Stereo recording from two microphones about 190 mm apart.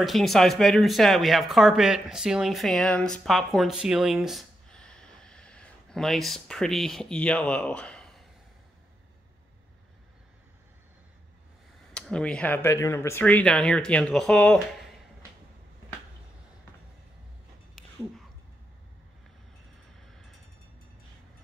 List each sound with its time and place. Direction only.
0.0 s speech: centre (ahead or behind)
11.9 s speech: 5° left (ahead or behind)
20.1 s music: centre (ahead or behind)